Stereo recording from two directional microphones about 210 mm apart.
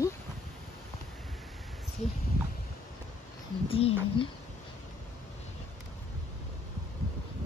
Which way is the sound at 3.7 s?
25° left (ahead or behind).